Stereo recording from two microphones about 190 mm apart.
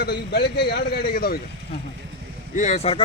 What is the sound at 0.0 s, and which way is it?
A man's voice, 60° left (ahead or behind).